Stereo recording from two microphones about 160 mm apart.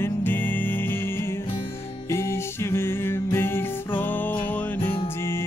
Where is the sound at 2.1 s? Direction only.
15° left (ahead or behind).